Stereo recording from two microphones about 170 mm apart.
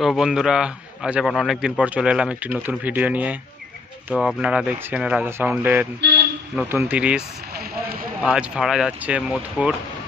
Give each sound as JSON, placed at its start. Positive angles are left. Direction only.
{"t": 0.0, "sound": "a man's voice", "side_deg": 0}
{"t": 7.5, "sound": "vehicle", "side_deg": -65}
{"t": 8.2, "sound": "a man's voice", "side_deg": -5}